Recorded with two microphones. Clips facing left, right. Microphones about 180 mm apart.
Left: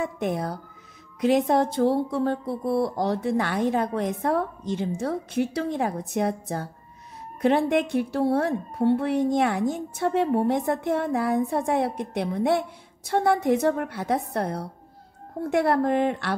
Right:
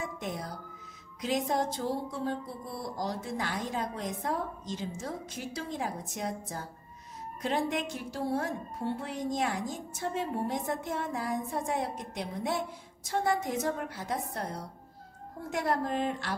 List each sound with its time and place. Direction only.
0.0 s a woman's voice: 60° left (ahead or behind)